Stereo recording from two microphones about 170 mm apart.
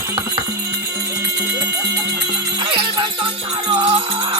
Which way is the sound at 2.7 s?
30° right (ahead or behind).